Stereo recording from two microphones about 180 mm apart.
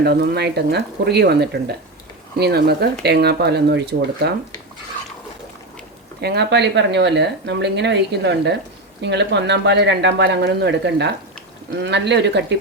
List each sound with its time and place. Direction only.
0.0 s speech: 60° right (ahead or behind)
6.2 s speech: 70° right (ahead or behind)